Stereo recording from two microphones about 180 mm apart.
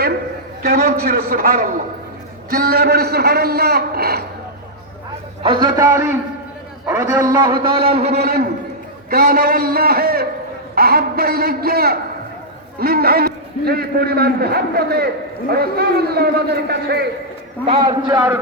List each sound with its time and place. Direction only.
0.6 s a man's voice: 60° right (ahead or behind)
5.4 s a man's voice: 25° right (ahead or behind)
7.3 s a man's voice: 25° right (ahead or behind)
8.1 s a man's voice: 60° right (ahead or behind)
17.7 s a man's voice: 25° right (ahead or behind)